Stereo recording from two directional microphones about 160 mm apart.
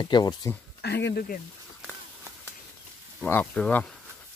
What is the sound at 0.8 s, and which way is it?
Speech, 90° left.